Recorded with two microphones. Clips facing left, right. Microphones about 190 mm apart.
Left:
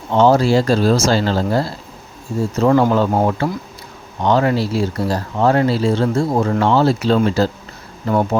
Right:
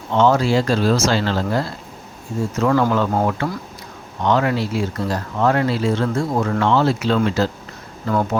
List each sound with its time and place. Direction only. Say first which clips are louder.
0.1 s speech: left 3 dB; 35° left (ahead or behind)